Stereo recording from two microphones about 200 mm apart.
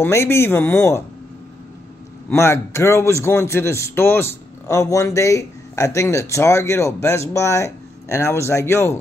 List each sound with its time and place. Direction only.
0.0 s a man's voice: 10° left (ahead or behind)
2.2 s a man's voice: 15° left (ahead or behind)